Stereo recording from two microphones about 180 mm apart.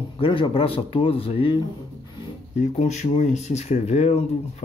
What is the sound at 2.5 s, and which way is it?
Speech, 40° left (ahead or behind).